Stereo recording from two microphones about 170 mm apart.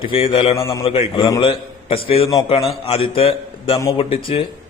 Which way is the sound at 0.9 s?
30° left (ahead or behind).